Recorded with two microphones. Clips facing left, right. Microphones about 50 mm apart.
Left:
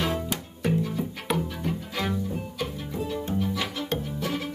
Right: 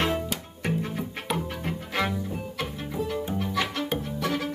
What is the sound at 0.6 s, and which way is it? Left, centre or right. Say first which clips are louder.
Music: left 3 dB; right.